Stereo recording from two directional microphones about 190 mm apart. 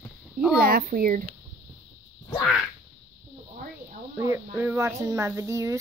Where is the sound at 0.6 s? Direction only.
50° right (ahead or behind).